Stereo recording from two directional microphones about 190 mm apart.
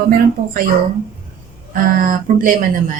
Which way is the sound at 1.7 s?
45° right (ahead or behind).